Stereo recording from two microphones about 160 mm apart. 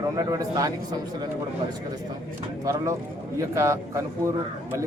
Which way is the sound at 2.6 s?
20° right (ahead or behind).